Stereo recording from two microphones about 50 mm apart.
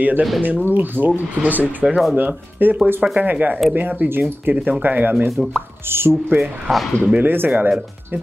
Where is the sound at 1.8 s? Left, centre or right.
Centre.